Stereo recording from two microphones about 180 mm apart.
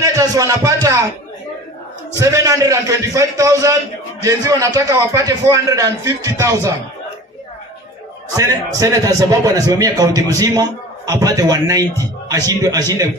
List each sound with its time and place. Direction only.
0.0 s speech: 20° right (ahead or behind)
2.1 s a man's voice: 20° right (ahead or behind)
8.3 s a man's voice: 20° right (ahead or behind)